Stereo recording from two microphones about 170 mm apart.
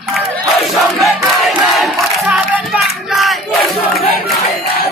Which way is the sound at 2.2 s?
10° right (ahead or behind).